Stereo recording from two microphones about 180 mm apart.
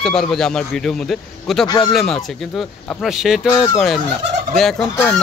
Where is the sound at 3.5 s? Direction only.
20° left (ahead or behind).